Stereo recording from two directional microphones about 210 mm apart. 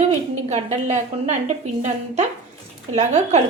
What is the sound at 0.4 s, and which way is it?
A woman's voice, 35° right (ahead or behind).